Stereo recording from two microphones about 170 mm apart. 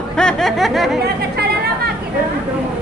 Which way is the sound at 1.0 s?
70° right (ahead or behind).